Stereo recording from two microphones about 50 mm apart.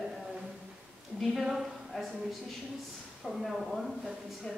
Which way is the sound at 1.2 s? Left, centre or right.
Centre.